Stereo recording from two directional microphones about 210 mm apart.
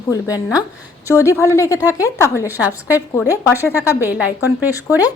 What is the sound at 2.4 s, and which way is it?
A woman's voice, 10° right (ahead or behind).